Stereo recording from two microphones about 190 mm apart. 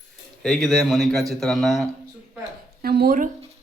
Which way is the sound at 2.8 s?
55° right (ahead or behind).